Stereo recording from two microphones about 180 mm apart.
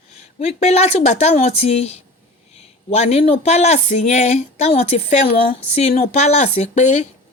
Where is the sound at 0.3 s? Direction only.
35° left (ahead or behind).